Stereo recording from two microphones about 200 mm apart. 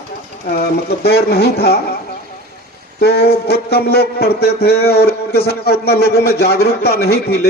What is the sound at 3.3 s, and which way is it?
A man's voice, 50° left (ahead or behind).